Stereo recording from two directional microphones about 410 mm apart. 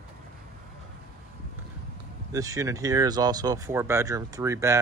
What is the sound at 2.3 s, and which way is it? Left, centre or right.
Speech, centre.